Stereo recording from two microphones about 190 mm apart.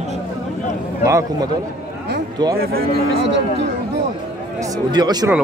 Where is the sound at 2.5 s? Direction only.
50° right (ahead or behind).